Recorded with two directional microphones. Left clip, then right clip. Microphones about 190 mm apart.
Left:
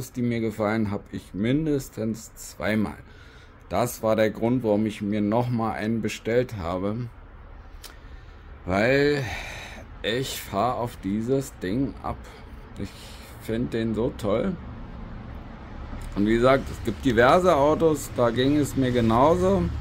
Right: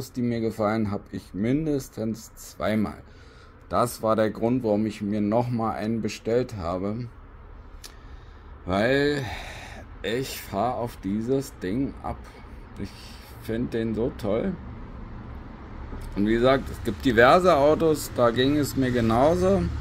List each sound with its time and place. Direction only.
0.2 s speech: 15° left (ahead or behind)
8.6 s speech: 15° left (ahead or behind)
16.2 s speech: 15° left (ahead or behind)